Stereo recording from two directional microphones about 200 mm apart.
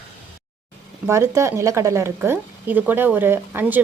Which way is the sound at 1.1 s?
15° right (ahead or behind).